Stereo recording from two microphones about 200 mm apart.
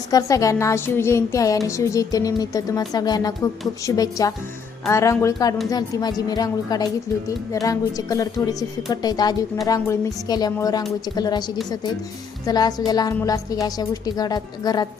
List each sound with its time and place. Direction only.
0.1 s a woman's voice: 15° left (ahead or behind)
12.5 s a woman's voice: 20° left (ahead or behind)